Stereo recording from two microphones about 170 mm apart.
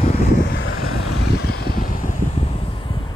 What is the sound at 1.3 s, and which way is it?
Vehicle, 70° left (ahead or behind).